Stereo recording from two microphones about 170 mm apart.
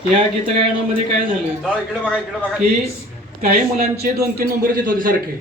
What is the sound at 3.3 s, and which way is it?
A man's voice, 60° right (ahead or behind).